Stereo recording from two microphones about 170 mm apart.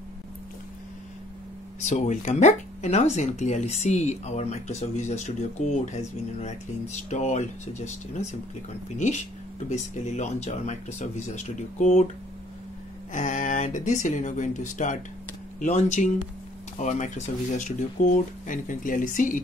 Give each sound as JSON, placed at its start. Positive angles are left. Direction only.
{"t": 1.9, "sound": "speech", "side_deg": 45}
{"t": 13.1, "sound": "speech", "side_deg": 50}